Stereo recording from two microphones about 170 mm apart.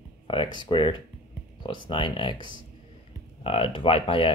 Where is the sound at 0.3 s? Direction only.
30° left (ahead or behind).